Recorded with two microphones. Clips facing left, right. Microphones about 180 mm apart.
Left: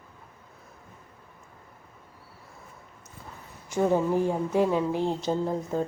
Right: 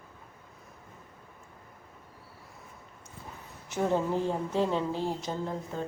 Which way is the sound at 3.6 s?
10° left (ahead or behind).